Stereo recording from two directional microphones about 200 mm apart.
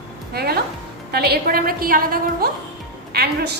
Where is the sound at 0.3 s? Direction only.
50° right (ahead or behind).